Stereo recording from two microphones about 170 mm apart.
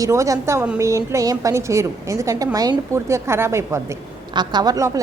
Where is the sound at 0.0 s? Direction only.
20° right (ahead or behind).